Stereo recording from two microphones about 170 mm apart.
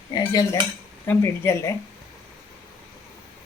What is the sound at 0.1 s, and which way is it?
Cutlery, 20° left (ahead or behind).